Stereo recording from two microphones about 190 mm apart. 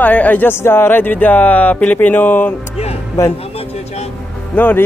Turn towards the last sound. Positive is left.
turn(degrees=10)  # may be behind; listen again after turning